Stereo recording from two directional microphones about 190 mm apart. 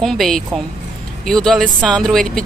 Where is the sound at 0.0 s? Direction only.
Centre (ahead or behind).